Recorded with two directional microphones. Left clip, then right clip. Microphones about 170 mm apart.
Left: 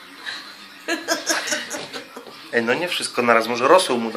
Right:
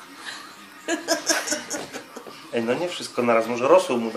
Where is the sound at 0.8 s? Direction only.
45° right (ahead or behind).